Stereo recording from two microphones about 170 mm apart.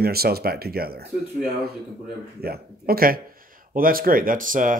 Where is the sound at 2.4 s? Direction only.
65° right (ahead or behind).